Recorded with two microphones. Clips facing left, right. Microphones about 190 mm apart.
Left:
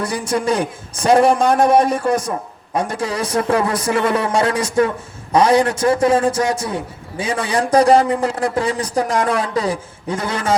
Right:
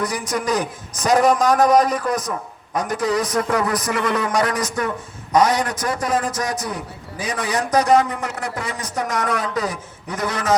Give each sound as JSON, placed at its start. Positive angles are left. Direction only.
{"t": 0.0, "sound": "a man's voice", "side_deg": 30}